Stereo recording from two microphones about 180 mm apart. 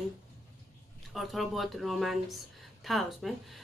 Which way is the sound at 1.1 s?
Centre (ahead or behind).